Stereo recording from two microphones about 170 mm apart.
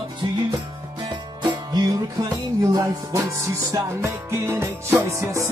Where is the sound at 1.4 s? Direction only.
20° right (ahead or behind).